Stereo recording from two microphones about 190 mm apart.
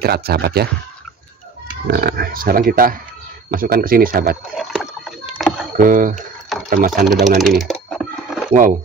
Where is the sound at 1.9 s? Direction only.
55° right (ahead or behind).